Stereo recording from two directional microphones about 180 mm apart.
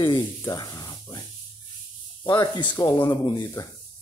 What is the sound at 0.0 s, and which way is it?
Speech, 25° left (ahead or behind).